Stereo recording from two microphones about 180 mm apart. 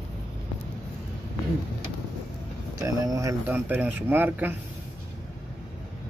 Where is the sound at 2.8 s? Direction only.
20° right (ahead or behind).